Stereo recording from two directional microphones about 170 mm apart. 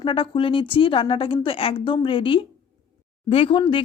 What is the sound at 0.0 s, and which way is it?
A woman's voice, 30° left (ahead or behind).